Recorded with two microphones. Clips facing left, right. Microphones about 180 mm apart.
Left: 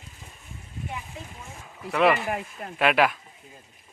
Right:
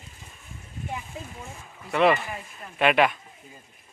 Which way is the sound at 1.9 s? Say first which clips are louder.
Even; centre (ahead or behind).